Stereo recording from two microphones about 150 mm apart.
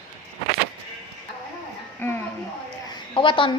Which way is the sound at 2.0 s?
15° left (ahead or behind).